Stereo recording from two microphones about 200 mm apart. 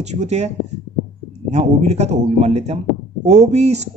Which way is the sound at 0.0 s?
35° right (ahead or behind).